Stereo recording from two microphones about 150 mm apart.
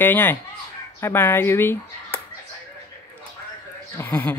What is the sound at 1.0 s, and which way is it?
Speech, 15° left (ahead or behind).